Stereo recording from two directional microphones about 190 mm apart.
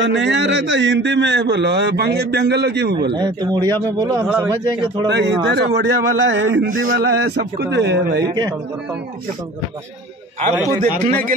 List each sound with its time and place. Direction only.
0.0 s a man's voice: 70° right (ahead or behind)
3.1 s speech: 20° right (ahead or behind)
5.0 s a man's voice: 65° right (ahead or behind)